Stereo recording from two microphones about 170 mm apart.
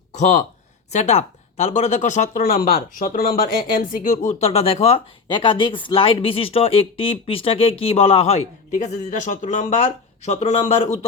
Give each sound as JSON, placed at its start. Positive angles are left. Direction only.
{"t": 0.1, "sound": "speech", "side_deg": 45}